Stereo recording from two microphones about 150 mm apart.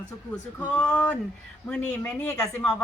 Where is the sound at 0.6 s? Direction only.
10° left (ahead or behind).